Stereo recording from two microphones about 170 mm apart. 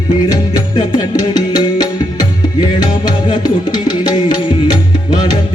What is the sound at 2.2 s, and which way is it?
Music, 25° left (ahead or behind).